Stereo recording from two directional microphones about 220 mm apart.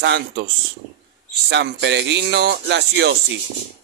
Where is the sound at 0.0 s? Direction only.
50° right (ahead or behind).